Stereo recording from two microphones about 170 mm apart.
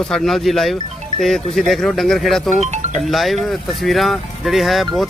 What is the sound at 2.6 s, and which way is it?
Music, 45° right (ahead or behind).